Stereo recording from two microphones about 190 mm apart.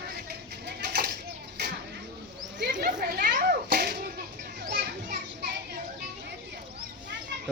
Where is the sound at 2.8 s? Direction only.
50° right (ahead or behind).